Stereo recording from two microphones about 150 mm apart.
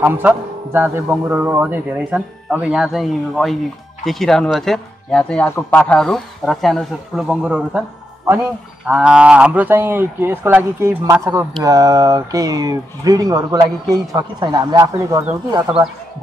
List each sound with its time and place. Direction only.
0.0 s a man's voice: 10° right (ahead or behind)
8.8 s speech: 5° right (ahead or behind)